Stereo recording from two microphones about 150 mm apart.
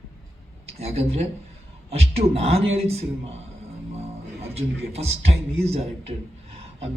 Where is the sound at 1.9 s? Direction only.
40° right (ahead or behind).